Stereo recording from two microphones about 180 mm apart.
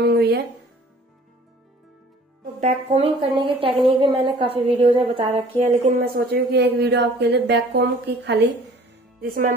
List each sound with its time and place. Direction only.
0.0 s music: 65° right (ahead or behind)
2.6 s a woman's voice: 35° right (ahead or behind)
6.0 s a woman's voice: 60° right (ahead or behind)